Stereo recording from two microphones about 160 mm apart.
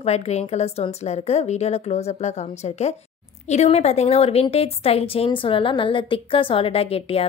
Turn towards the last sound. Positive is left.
turn(degrees=35)  # may be behind; listen again after turning